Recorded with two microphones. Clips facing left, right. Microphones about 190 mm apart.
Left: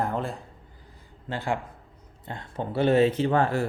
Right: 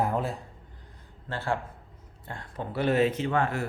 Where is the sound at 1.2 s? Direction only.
15° left (ahead or behind).